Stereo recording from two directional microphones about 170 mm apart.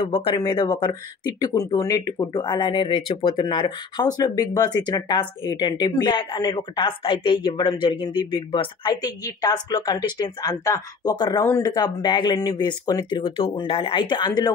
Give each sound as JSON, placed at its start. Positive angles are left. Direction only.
{"t": 0.0, "sound": "speech", "side_deg": 30}